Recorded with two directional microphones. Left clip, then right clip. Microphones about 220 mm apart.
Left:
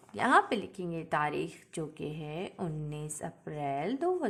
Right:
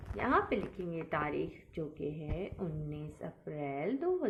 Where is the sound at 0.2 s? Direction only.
40° left (ahead or behind).